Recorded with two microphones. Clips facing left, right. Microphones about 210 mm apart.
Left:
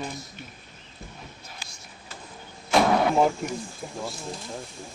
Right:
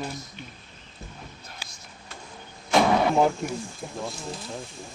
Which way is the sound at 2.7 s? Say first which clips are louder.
Even; centre (ahead or behind).